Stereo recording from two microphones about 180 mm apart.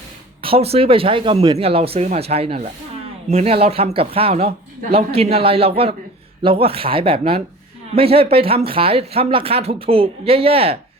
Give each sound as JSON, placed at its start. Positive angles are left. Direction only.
{"t": 0.4, "sound": "speech", "side_deg": -35}